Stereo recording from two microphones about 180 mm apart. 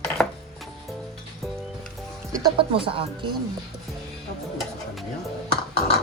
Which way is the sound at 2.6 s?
30° right (ahead or behind).